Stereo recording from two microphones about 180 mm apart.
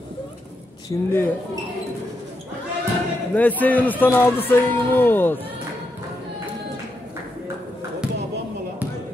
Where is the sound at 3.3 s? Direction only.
10° left (ahead or behind).